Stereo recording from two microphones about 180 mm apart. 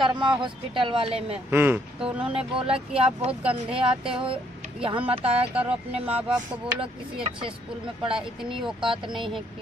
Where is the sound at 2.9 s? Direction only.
30° right (ahead or behind).